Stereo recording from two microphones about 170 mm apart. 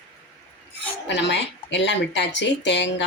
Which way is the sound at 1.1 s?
90° left.